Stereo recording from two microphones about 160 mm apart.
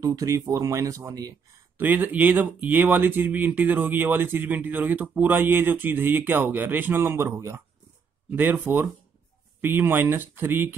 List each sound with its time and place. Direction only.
0.0 s speech: 20° right (ahead or behind)